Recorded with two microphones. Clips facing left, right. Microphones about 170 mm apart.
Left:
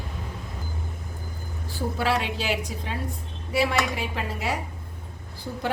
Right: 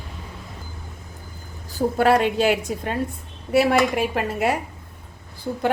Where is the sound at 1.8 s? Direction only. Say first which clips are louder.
Right 8 dB; 50° right (ahead or behind).